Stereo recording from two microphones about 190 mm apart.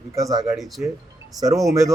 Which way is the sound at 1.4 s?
20° right (ahead or behind).